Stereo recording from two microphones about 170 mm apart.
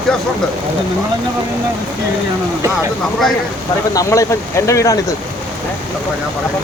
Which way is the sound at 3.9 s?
20° left (ahead or behind).